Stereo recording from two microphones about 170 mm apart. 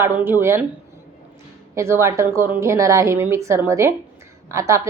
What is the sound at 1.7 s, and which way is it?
Speech, 15° right (ahead or behind).